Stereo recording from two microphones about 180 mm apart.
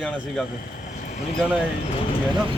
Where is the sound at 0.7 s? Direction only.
50° left (ahead or behind).